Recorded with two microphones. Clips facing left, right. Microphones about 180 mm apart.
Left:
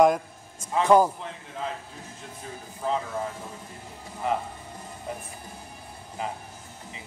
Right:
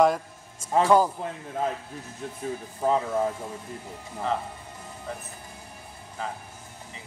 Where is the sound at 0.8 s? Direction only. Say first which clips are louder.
Left 2 dB; 15° left (ahead or behind).